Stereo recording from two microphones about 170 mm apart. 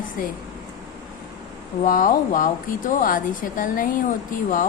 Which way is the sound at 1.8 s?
55° left (ahead or behind).